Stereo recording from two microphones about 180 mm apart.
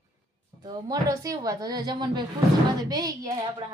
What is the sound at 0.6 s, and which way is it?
A woman's voice, 20° right (ahead or behind).